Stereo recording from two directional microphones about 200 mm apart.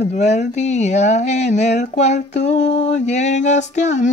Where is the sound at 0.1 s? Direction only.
35° left (ahead or behind).